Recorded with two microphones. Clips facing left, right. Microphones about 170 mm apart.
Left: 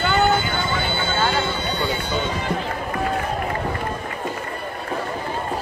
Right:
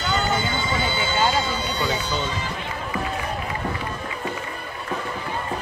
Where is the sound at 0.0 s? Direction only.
60° left (ahead or behind).